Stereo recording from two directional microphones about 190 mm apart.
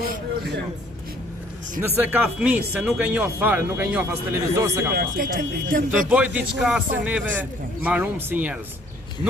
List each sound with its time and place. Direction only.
2.0 s speech: 10° right (ahead or behind)
4.9 s speech: 50° right (ahead or behind)
5.9 s speech: 5° right (ahead or behind)